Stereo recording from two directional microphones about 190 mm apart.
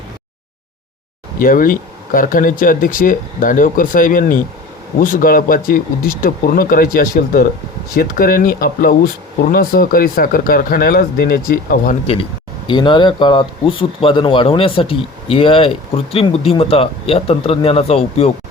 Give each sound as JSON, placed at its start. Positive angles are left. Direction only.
{"t": 1.4, "sound": "speech", "side_deg": 45}
{"t": 12.6, "sound": "speech", "side_deg": 25}